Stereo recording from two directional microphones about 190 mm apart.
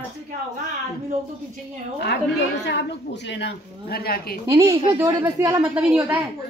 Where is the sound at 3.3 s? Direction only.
60° left (ahead or behind).